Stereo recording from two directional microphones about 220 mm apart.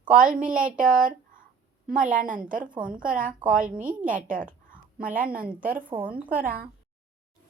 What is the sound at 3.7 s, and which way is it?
Speech, 5° right (ahead or behind).